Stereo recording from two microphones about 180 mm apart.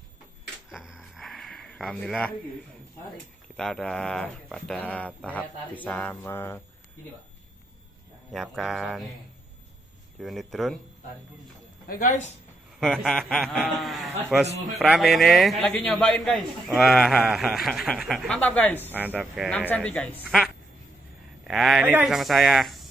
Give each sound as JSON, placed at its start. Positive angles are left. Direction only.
{"t": 0.7, "sound": "a sound", "side_deg": -5}
{"t": 3.5, "sound": "speech", "side_deg": 5}
{"t": 8.3, "sound": "a man's voice", "side_deg": 0}
{"t": 10.2, "sound": "a man's voice", "side_deg": 0}
{"t": 11.9, "sound": "speech", "side_deg": 50}
{"t": 12.8, "sound": "a man's voice", "side_deg": 0}
{"t": 18.9, "sound": "a man's voice", "side_deg": -10}